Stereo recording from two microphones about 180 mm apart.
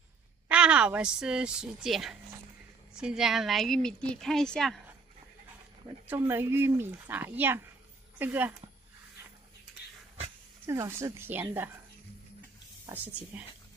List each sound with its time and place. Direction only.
0.5 s a woman's voice: 5° right (ahead or behind)
6.0 s speech: 10° right (ahead or behind)
10.7 s speech: 20° right (ahead or behind)
12.8 s speech: 10° right (ahead or behind)